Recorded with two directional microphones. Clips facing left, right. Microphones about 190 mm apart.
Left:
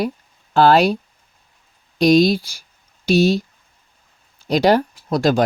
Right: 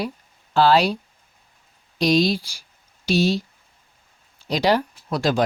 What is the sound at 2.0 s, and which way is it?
Speech, 50° left (ahead or behind).